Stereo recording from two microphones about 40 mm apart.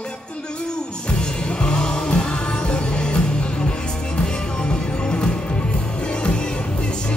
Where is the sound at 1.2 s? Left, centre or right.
Left.